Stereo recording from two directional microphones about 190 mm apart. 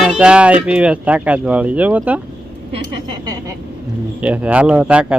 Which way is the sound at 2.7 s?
25° right (ahead or behind).